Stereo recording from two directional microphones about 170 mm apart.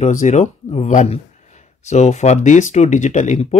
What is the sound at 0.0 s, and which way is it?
Speech, 45° left (ahead or behind).